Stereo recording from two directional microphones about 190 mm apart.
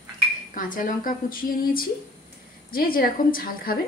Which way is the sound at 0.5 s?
45° left (ahead or behind).